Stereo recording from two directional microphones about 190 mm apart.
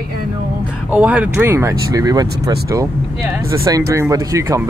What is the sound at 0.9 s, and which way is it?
Speech, 5° right (ahead or behind).